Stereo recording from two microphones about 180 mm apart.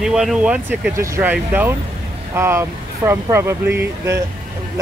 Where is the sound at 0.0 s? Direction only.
5° right (ahead or behind).